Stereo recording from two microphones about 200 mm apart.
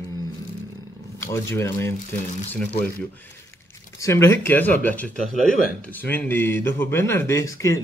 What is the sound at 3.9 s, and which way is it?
Speech, 15° left (ahead or behind).